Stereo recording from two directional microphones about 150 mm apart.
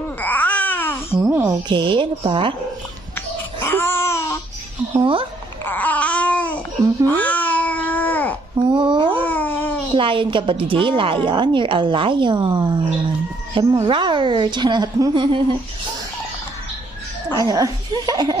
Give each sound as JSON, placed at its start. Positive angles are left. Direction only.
{"t": 0.2, "sound": "babbling", "side_deg": 10}
{"t": 1.1, "sound": "speech", "side_deg": -10}
{"t": 1.7, "sound": "speech", "side_deg": -30}
{"t": 3.6, "sound": "babbling", "side_deg": 15}
{"t": 5.7, "sound": "babbling", "side_deg": 10}
{"t": 8.7, "sound": "babbling", "side_deg": -30}
{"t": 9.2, "sound": "babbling", "side_deg": 10}
{"t": 9.9, "sound": "speech", "side_deg": -35}
{"t": 17.4, "sound": "speech", "side_deg": -25}